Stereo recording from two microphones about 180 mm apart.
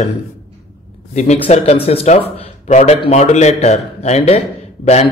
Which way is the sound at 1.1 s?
40° left (ahead or behind).